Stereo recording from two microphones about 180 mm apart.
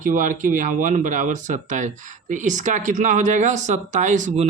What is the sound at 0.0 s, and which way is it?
Speech, 45° right (ahead or behind).